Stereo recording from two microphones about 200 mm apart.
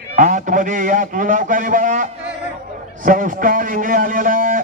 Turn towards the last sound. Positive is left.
turn(degrees=-45)  # may be behind; listen again after turning